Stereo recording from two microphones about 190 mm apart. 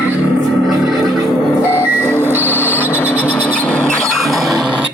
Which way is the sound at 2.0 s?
10° left (ahead or behind).